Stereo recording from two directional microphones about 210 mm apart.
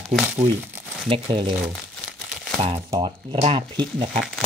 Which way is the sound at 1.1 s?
25° right (ahead or behind).